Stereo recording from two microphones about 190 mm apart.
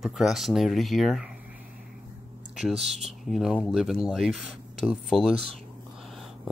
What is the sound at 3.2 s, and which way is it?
Speech, centre (ahead or behind).